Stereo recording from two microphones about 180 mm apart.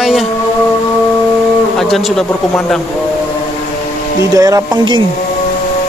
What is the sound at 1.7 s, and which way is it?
Speech, centre (ahead or behind).